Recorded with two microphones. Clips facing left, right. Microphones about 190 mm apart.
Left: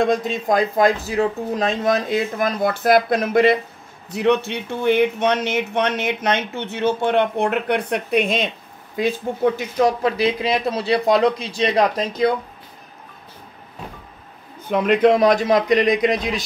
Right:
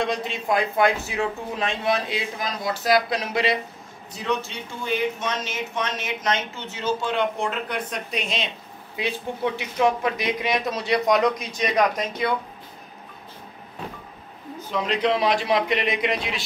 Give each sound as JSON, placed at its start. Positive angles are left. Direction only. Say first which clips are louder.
{"t": 0.0, "sound": "a man's voice", "louder": "left 7 dB", "side_deg": 45}
{"t": 4.1, "sound": "speech", "louder": "left 9 dB", "side_deg": 65}
{"t": 14.6, "sound": "a man's voice", "louder": "left 8 dB", "side_deg": 55}